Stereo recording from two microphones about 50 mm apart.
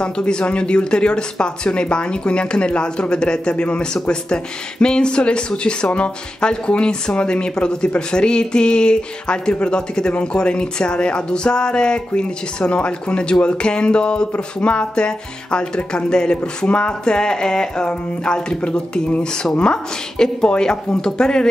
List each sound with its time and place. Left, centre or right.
0.0 s speech: centre